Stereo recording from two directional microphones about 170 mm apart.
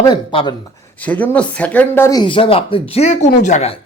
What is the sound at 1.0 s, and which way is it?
Speech, 10° left (ahead or behind).